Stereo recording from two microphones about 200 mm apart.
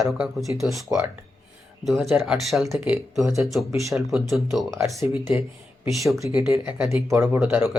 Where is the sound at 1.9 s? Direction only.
Centre (ahead or behind).